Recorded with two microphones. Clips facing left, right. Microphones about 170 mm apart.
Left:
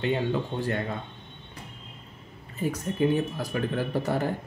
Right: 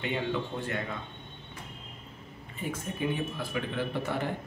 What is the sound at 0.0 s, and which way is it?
Speech, 35° left (ahead or behind).